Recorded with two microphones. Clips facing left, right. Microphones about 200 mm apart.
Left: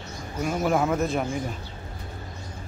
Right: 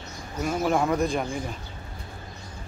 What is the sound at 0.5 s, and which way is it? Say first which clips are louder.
Speech: even; 5° left (ahead or behind).